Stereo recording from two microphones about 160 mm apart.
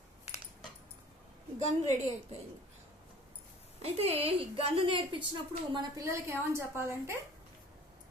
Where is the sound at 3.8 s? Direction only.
40° right (ahead or behind).